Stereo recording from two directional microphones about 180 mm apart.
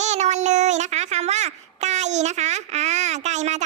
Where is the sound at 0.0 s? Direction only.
40° right (ahead or behind).